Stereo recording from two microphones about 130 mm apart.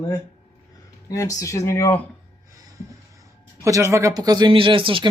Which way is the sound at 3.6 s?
25° right (ahead or behind).